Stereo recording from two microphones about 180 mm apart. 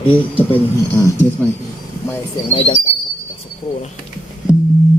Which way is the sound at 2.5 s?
30° left (ahead or behind).